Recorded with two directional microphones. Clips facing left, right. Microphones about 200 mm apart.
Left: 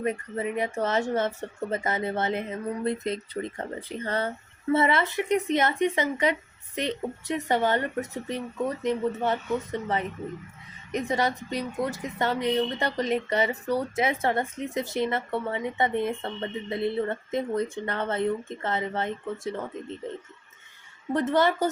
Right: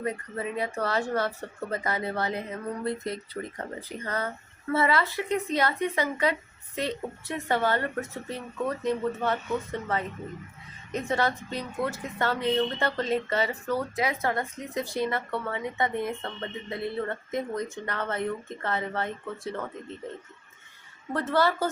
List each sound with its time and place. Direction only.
0.0 s speech: 20° left (ahead or behind)
7.3 s a woman's voice: 20° left (ahead or behind)
21.1 s speech: 20° left (ahead or behind)